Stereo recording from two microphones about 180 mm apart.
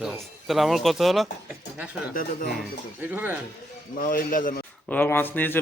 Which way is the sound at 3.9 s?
50° left (ahead or behind).